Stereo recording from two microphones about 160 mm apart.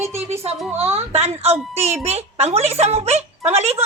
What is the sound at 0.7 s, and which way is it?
A child's voice, 40° right (ahead or behind).